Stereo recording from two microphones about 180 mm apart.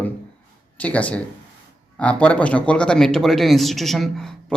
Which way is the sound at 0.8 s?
10° left (ahead or behind).